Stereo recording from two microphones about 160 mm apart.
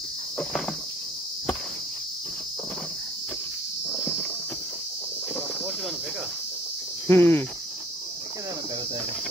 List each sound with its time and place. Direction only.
3.9 s walk: 5° right (ahead or behind)
7.1 s speech: 15° left (ahead or behind)